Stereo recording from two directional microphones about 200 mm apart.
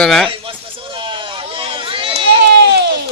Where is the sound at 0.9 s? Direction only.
25° right (ahead or behind).